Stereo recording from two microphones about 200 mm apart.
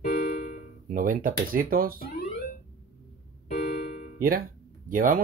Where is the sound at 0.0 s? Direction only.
45° left (ahead or behind).